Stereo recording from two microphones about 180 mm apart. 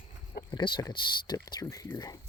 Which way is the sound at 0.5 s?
25° left (ahead or behind).